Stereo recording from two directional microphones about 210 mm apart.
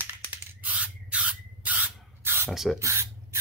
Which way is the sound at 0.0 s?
10° right (ahead or behind).